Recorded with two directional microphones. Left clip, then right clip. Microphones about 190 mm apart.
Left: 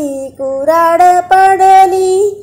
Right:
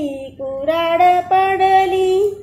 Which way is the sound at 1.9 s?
20° left (ahead or behind).